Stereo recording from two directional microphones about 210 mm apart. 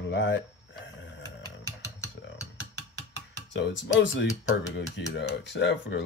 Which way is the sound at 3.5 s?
60° left (ahead or behind).